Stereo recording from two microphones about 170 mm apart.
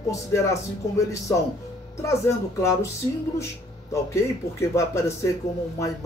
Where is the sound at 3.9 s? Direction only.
15° left (ahead or behind).